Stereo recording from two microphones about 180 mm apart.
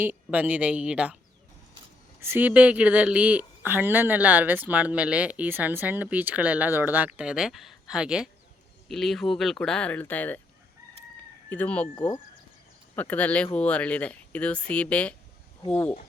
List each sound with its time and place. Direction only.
0.0 s speech: 10° right (ahead or behind)
2.2 s speech: 10° right (ahead or behind); by 10.4 s 10° left (ahead or behind)
11.4 s speech: 10° left (ahead or behind)
13.0 s speech: 10° left (ahead or behind)